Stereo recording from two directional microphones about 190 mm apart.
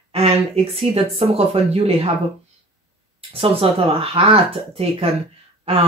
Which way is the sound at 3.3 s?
30° right (ahead or behind).